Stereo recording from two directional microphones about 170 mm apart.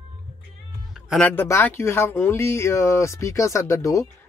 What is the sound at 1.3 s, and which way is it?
Speech, 15° left (ahead or behind).